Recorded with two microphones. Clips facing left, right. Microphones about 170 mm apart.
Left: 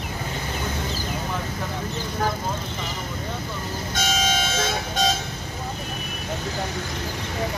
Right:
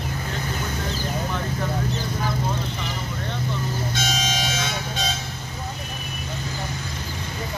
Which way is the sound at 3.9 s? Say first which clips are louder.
Left 2 dB; 45° left (ahead or behind).